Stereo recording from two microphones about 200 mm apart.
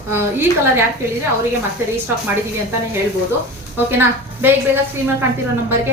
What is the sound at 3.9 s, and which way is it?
A woman's voice, 10° right (ahead or behind).